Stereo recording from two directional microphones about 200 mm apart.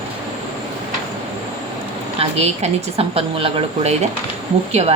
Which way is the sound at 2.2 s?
30° right (ahead or behind).